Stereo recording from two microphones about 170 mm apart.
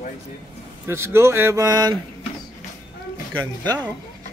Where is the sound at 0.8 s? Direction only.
15° right (ahead or behind).